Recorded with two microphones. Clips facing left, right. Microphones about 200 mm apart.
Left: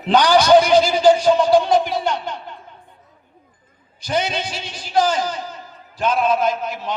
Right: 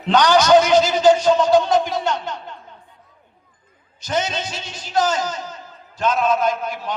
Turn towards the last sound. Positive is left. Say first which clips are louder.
# left 1 dB
turn(degrees=0)  # may be behind; listen again after turning